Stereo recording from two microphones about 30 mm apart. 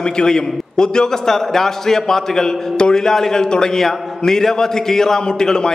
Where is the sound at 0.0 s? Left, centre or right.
Left.